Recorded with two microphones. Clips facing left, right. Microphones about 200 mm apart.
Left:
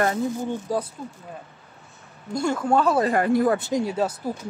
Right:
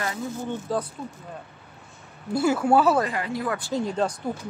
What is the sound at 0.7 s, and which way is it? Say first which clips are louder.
Speech: left 1 dB; 10° left (ahead or behind).